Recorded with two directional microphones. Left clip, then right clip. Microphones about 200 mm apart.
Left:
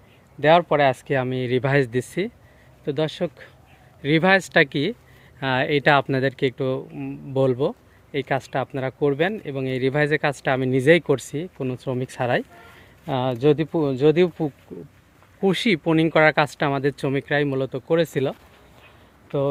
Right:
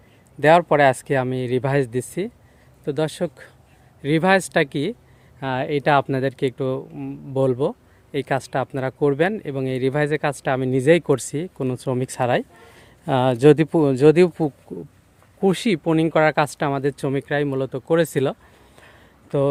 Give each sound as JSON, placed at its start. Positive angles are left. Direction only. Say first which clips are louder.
{"t": 0.3, "sound": "speech", "louder": "right 2 dB", "side_deg": -20}
{"t": 2.8, "sound": "speech", "louder": "right 1 dB", "side_deg": -15}
{"t": 4.0, "sound": "speech", "louder": "even", "side_deg": -5}
{"t": 15.4, "sound": "speech", "louder": "even", "side_deg": -10}
{"t": 19.3, "sound": "speech", "louder": "right 3 dB", "side_deg": -30}